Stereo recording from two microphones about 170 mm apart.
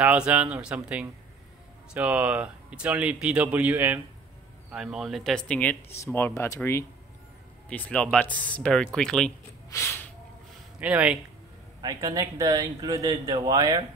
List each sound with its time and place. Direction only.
0.0 s speech: 10° right (ahead or behind)
9.7 s speech: 15° left (ahead or behind)
10.8 s speech: 5° right (ahead or behind)
11.8 s speech: 20° right (ahead or behind)